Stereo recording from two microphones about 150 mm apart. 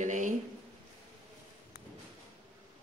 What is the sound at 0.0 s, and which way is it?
Speech, 55° right (ahead or behind).